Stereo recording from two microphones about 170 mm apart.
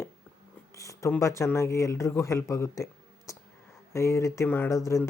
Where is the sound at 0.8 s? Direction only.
20° left (ahead or behind).